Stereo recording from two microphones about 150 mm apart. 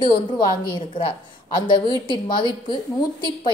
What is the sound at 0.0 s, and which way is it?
A woman's voice, 30° left (ahead or behind).